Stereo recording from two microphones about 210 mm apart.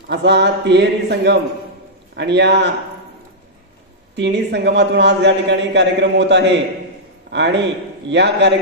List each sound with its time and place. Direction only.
0.1 s a man's voice: 55° right (ahead or behind)
4.2 s a man's voice: 55° right (ahead or behind)